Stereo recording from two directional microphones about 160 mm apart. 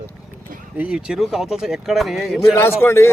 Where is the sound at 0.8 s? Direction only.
5° right (ahead or behind).